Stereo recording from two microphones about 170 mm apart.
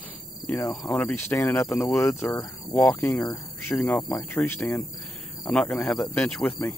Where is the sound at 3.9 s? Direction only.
15° left (ahead or behind).